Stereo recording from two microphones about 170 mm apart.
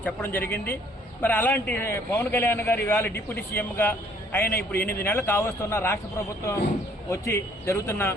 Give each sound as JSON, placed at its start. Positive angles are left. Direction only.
{"t": 0.0, "sound": "a man's voice", "side_deg": 10}